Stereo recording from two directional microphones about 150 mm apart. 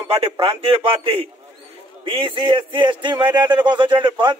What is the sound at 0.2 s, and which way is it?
A man's voice, 40° right (ahead or behind).